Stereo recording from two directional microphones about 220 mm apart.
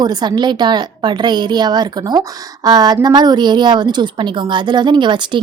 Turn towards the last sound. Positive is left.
turn(degrees=-20)  # may be behind; listen again after turning